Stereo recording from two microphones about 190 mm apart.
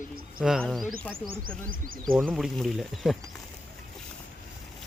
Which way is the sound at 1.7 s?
45° right (ahead or behind).